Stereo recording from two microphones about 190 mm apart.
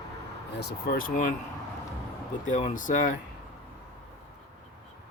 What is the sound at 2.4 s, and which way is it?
Speech, 40° left (ahead or behind).